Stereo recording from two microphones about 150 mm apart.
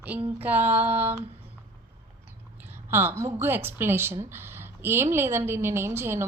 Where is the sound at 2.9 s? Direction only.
15° right (ahead or behind).